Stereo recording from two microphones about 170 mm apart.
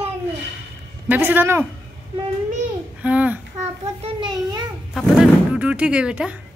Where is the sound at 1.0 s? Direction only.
10° right (ahead or behind).